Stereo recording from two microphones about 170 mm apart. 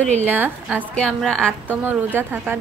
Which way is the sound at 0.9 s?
5° left (ahead or behind).